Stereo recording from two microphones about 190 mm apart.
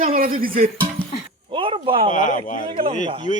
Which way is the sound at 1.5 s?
25° right (ahead or behind).